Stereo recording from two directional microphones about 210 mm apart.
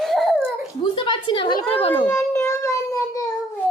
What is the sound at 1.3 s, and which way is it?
Speech, 25° left (ahead or behind).